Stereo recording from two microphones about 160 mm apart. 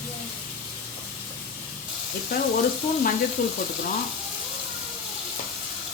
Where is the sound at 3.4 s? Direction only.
55° left (ahead or behind).